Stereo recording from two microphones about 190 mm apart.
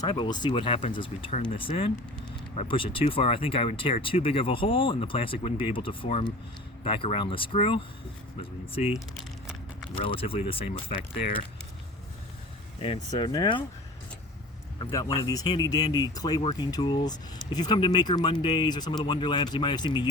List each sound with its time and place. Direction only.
0.0 s speech: 25° left (ahead or behind)
10.0 s speech: 30° left (ahead or behind)
12.8 s speech: 25° left (ahead or behind)
14.8 s speech: 20° left (ahead or behind)